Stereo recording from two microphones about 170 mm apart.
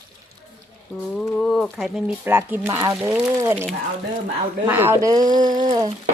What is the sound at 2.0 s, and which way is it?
A woman's voice, 10° right (ahead or behind).